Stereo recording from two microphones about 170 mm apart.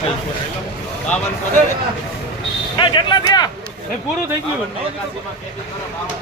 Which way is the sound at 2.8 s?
25° left (ahead or behind).